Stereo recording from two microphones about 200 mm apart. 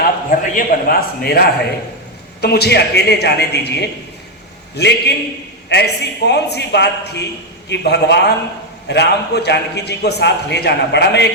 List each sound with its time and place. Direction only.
0.0 s a man's voice: 45° left (ahead or behind)